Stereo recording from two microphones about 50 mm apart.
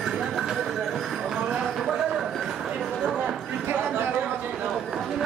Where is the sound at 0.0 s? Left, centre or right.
Centre.